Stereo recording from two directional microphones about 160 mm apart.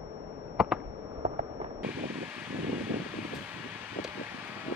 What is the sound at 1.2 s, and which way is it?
Fireworks, 45° right (ahead or behind).